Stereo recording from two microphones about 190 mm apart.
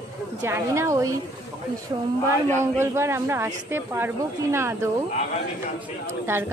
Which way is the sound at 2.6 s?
15° right (ahead or behind).